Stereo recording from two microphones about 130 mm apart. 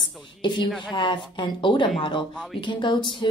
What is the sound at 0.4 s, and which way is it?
Speech, 35° left (ahead or behind).